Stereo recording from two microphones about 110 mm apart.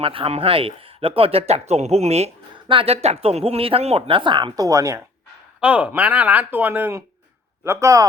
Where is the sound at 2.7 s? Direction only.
60° right (ahead or behind); by 5.0 s 30° right (ahead or behind).